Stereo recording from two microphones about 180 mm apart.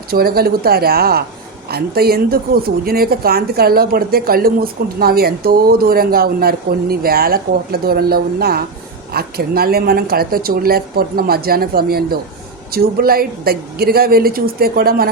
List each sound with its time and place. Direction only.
0.1 s a woman's voice: 55° right (ahead or behind)